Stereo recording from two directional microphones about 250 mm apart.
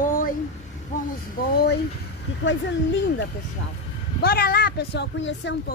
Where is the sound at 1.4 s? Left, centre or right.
Left.